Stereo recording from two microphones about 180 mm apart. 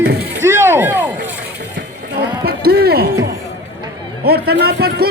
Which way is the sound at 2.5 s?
60° right (ahead or behind).